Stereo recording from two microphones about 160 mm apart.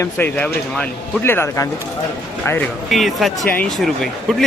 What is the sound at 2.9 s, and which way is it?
Speech, centre (ahead or behind).